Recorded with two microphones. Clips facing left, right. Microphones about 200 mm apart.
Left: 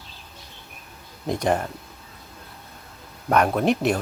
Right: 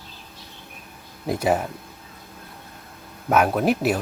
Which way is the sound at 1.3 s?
5° right (ahead or behind).